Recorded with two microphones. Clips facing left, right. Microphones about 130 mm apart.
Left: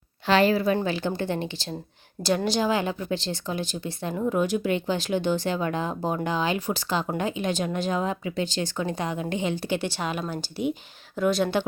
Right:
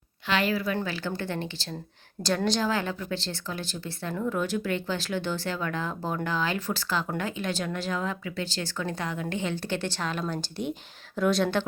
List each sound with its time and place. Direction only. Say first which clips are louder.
0.3 s a woman's voice: left 6 dB; 35° left (ahead or behind)
0.8 s speech: left 5 dB; 20° left (ahead or behind); by 11.6 s centre (ahead or behind)